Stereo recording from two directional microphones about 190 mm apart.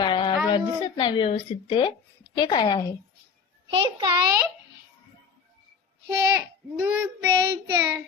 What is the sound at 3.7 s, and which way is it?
Speech, 25° right (ahead or behind).